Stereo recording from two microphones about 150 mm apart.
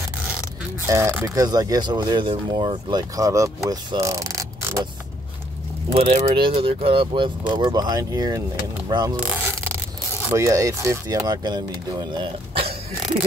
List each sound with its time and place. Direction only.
0.8 s speech: 20° right (ahead or behind)
5.9 s speech: 40° right (ahead or behind)
10.3 s speech: 20° right (ahead or behind)